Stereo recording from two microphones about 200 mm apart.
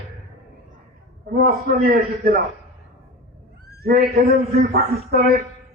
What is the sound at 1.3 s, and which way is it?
A man's voice, 50° right (ahead or behind).